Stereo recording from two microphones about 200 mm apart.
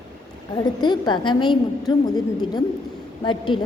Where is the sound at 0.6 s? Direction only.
20° left (ahead or behind).